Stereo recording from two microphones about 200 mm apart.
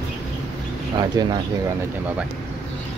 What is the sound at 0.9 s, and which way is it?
Speech, 20° right (ahead or behind).